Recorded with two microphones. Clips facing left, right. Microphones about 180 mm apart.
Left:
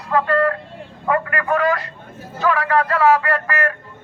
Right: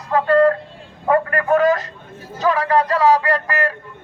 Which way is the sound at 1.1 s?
40° right (ahead or behind).